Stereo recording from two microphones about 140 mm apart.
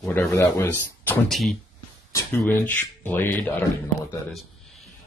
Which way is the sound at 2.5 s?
10° left (ahead or behind).